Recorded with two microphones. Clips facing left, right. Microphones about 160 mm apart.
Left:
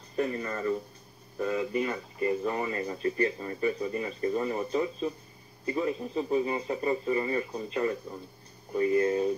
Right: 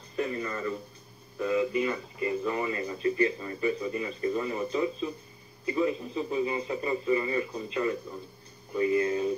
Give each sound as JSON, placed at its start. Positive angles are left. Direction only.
{"t": 0.1, "sound": "radio", "side_deg": 45}
{"t": 1.4, "sound": "speech", "side_deg": 45}